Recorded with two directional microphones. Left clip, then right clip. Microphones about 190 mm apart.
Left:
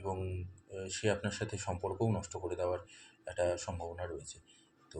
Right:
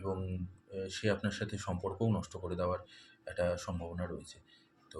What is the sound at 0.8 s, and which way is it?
Speech, 15° right (ahead or behind).